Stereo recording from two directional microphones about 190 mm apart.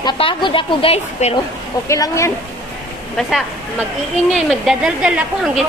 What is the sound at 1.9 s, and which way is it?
Speech, 15° left (ahead or behind).